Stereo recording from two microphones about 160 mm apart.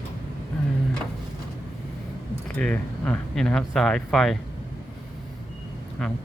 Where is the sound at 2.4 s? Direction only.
10° left (ahead or behind).